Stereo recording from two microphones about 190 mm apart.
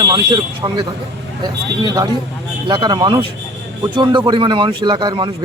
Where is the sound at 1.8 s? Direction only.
20° right (ahead or behind).